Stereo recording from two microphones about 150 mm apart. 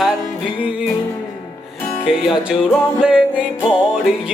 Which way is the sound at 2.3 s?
5° right (ahead or behind).